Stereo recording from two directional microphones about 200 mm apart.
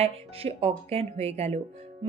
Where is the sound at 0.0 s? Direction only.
30° right (ahead or behind).